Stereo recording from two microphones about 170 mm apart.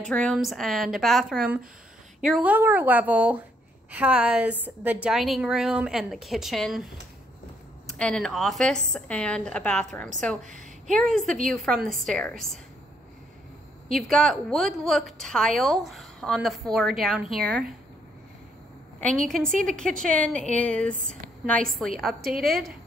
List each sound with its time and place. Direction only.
0.0 s a woman's voice: 5° left (ahead or behind)
13.8 s a woman's voice: centre (ahead or behind)
19.0 s a woman's voice: 5° left (ahead or behind)
22.3 s a woman's voice: 60° right (ahead or behind)